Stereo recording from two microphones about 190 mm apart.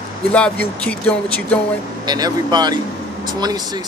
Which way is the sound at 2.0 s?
20° right (ahead or behind).